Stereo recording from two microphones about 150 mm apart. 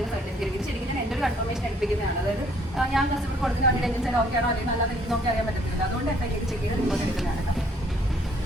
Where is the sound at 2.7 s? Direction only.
Centre (ahead or behind).